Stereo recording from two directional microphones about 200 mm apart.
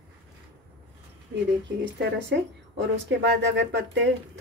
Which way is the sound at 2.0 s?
60° right (ahead or behind).